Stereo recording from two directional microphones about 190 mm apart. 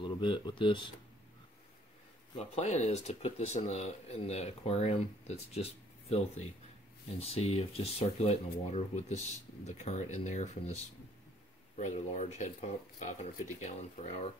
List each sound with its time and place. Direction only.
0.0 s speech: 25° left (ahead or behind)
2.3 s speech: 35° left (ahead or behind)